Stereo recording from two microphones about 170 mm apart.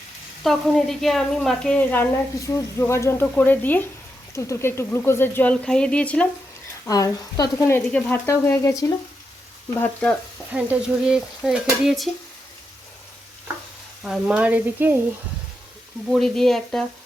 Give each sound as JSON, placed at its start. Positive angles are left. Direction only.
{"t": 0.4, "sound": "speech", "side_deg": 0}
{"t": 6.8, "sound": "speech", "side_deg": 20}
{"t": 7.9, "sound": "speech", "side_deg": 5}
{"t": 10.5, "sound": "speech", "side_deg": -5}
{"t": 14.0, "sound": "sizzle", "side_deg": -5}
{"t": 16.1, "sound": "speech", "side_deg": 0}